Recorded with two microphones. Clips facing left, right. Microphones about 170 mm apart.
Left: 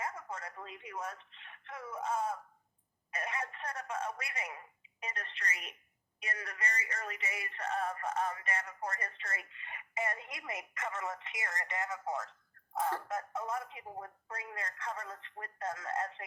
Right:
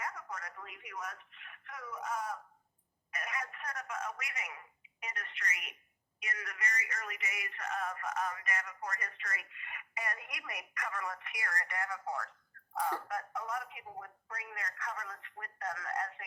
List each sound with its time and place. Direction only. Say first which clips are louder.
0.0 s speech: left 2 dB; 25° left (ahead or behind)